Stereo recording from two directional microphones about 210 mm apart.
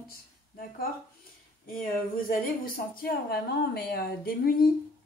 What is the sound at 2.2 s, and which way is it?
Speech, 45° left (ahead or behind).